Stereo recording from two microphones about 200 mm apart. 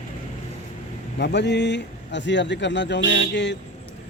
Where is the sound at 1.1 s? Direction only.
60° left (ahead or behind).